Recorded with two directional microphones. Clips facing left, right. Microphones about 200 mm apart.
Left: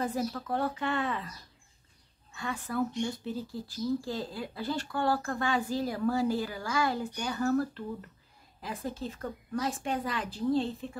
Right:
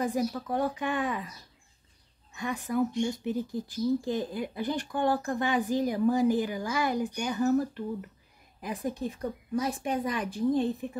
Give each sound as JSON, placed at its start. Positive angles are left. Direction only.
{"t": 0.0, "sound": "speech", "side_deg": -15}
{"t": 2.3, "sound": "speech", "side_deg": -15}
{"t": 8.8, "sound": "speech", "side_deg": -15}